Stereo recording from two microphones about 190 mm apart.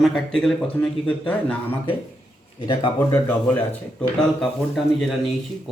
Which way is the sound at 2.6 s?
25° left (ahead or behind).